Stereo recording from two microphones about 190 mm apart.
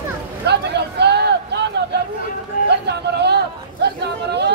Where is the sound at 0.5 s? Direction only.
60° right (ahead or behind).